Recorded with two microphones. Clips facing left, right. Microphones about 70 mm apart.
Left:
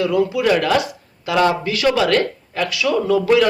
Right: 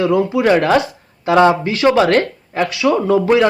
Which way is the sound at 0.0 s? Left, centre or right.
Right.